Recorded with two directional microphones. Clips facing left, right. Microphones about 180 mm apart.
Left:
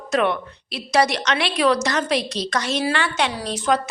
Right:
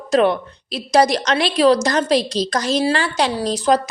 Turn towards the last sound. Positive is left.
turn(degrees=-35)  # may be behind; listen again after turning